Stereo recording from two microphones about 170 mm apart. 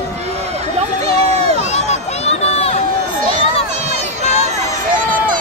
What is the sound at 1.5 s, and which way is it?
Run, 40° left (ahead or behind).